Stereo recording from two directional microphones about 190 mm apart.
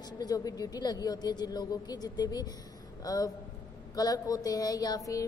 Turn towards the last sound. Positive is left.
turn(degrees=20)  # may be behind; listen again after turning